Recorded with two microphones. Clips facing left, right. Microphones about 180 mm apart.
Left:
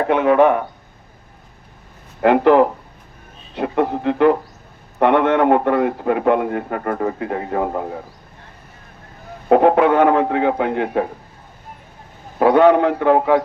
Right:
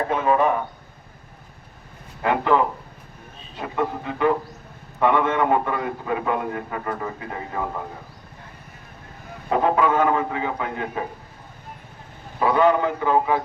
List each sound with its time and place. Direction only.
0.1 s a man's voice: 75° left (ahead or behind)
2.2 s a man's voice: 70° left (ahead or behind)
9.5 s a man's voice: 65° left (ahead or behind)
12.4 s a man's voice: 70° left (ahead or behind)